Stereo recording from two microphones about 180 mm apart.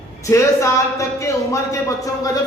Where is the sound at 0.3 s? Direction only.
15° left (ahead or behind).